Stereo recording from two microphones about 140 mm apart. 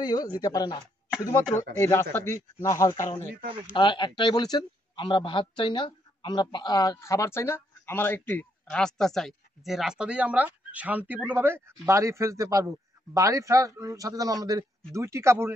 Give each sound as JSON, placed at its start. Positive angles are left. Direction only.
{"t": 0.0, "sound": "speech", "side_deg": 30}
{"t": 3.7, "sound": "speech", "side_deg": 35}